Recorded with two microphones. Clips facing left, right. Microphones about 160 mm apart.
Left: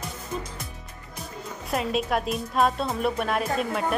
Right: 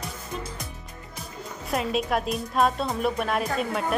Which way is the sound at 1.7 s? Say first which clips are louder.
Even; centre (ahead or behind).